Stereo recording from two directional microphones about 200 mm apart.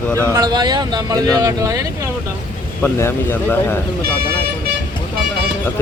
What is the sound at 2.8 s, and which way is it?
Speech, 10° left (ahead or behind).